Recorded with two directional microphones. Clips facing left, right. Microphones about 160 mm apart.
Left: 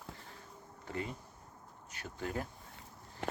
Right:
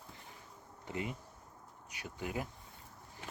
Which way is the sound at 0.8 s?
15° right (ahead or behind).